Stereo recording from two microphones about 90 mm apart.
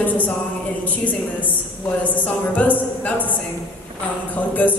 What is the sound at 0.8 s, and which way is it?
A man's voice, 20° left (ahead or behind).